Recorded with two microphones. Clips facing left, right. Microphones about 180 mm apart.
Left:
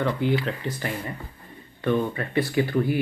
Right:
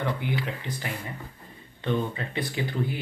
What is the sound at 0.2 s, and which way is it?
Speech, 15° right (ahead or behind).